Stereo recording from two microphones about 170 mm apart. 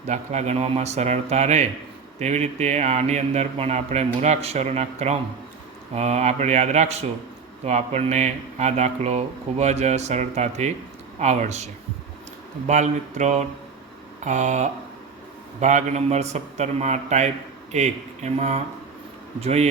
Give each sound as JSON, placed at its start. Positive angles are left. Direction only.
{"t": 0.1, "sound": "speech", "side_deg": -40}